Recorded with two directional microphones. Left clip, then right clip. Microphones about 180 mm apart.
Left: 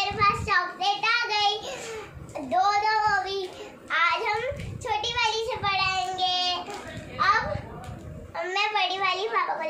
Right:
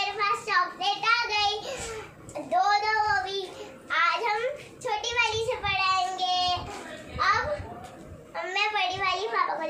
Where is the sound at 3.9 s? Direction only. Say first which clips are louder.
Left 1 dB; 5° left (ahead or behind).